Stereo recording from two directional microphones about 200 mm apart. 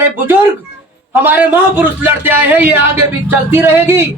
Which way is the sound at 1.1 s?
10° right (ahead or behind).